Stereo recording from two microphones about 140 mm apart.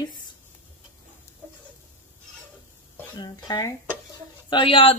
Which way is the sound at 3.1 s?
30° left (ahead or behind).